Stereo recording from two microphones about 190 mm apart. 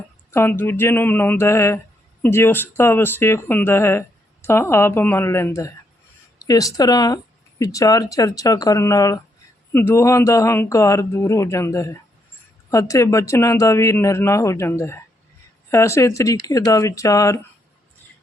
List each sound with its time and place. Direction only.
0.3 s speech: 15° left (ahead or behind)